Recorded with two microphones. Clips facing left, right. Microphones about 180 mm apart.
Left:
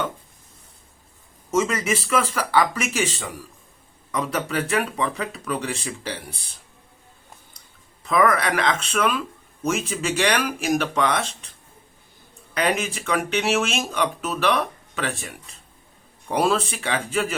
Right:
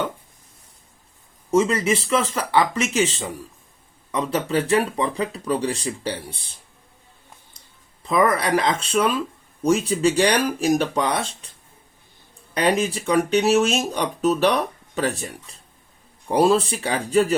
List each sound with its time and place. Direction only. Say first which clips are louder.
1.5 s speech: right 3 dB; 30° right (ahead or behind)
8.0 s speech: even; 25° right (ahead or behind)
12.5 s speech: right 3 dB; 35° right (ahead or behind)
16.3 s speech: right 4 dB; 35° right (ahead or behind)